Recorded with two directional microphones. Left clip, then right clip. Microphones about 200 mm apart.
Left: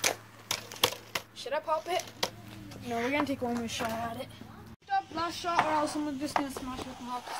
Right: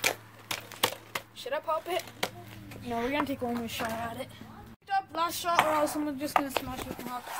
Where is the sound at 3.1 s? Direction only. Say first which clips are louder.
Even; 15° right (ahead or behind).